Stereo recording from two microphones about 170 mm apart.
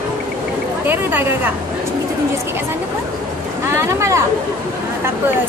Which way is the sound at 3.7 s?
15° right (ahead or behind).